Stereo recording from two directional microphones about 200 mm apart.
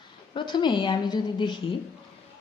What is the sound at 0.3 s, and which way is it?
A woman's voice, 25° left (ahead or behind).